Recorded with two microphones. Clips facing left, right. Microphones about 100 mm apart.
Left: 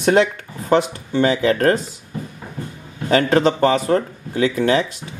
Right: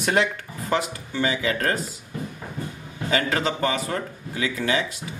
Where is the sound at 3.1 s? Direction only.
35° left (ahead or behind).